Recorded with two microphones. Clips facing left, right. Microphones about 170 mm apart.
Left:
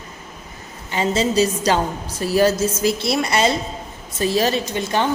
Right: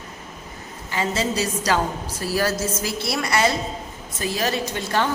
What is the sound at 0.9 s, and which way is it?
A woman's voice, 25° left (ahead or behind).